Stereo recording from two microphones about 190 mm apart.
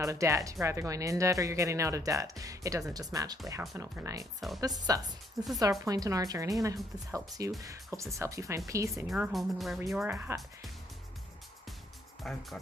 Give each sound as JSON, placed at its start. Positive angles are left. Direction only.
{"t": 0.0, "sound": "speech", "side_deg": -15}
{"t": 9.0, "sound": "a woman's voice", "side_deg": 0}
{"t": 10.1, "sound": "speech", "side_deg": -15}
{"t": 12.2, "sound": "speech", "side_deg": 0}